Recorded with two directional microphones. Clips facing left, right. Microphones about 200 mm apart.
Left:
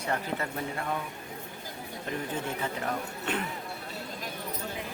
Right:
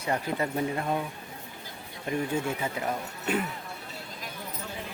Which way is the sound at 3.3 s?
10° right (ahead or behind).